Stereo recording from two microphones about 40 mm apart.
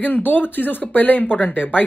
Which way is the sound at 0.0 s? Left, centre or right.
Left.